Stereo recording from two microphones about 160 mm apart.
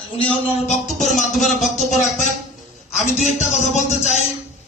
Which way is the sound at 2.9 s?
45° left (ahead or behind).